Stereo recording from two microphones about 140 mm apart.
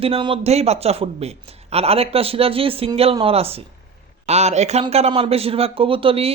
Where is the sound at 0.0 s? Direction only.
40° right (ahead or behind).